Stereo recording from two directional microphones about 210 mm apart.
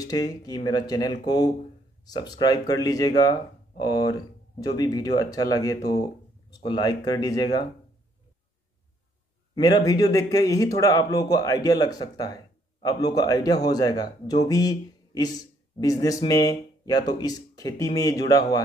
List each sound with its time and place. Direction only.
0.0 s speech: 20° left (ahead or behind)
9.6 s speech: 20° left (ahead or behind)